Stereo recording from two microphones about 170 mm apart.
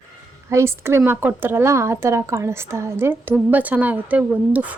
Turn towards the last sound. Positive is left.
turn(degrees=-10)  # may be behind; listen again after turning